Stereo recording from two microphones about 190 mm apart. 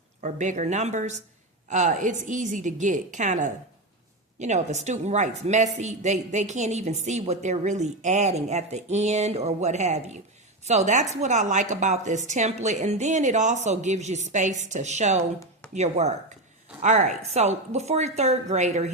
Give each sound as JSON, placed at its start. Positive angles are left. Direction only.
{"t": 0.2, "sound": "speech", "side_deg": -40}